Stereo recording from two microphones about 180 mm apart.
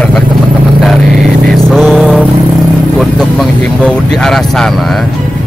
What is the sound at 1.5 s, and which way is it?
Speech, centre (ahead or behind).